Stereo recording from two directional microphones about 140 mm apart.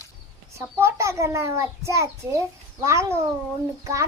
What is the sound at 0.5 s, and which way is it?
A child's voice, 20° right (ahead or behind).